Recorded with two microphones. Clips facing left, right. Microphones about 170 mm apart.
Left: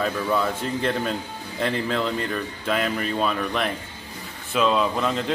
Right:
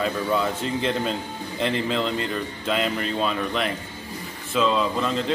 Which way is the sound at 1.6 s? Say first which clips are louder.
Even; 15° right (ahead or behind).